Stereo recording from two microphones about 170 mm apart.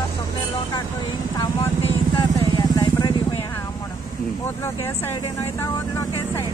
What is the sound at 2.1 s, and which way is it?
Vehicle, 25° left (ahead or behind).